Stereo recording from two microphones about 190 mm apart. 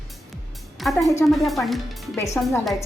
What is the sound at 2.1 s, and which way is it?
Speech, 15° left (ahead or behind).